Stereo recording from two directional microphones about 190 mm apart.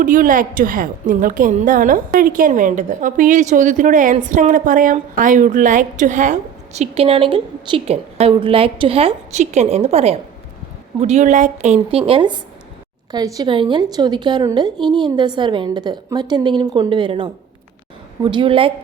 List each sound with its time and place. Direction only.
0.0 s a woman's voice: 45° right (ahead or behind); by 18.7 s 30° right (ahead or behind)